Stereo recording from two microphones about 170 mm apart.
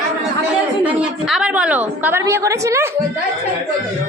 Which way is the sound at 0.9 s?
5° right (ahead or behind).